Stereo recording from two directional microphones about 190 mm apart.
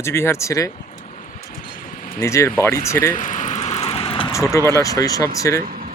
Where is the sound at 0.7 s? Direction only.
35° left (ahead or behind).